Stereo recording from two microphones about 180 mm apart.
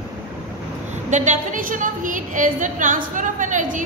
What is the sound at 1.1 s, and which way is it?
A woman's voice, 45° right (ahead or behind).